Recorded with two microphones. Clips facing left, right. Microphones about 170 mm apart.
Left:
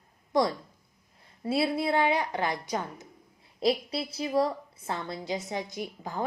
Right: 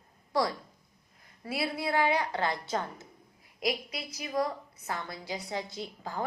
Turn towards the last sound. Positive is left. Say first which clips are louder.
# left 2 dB
turn(degrees=20)  # may be behind; listen again after turning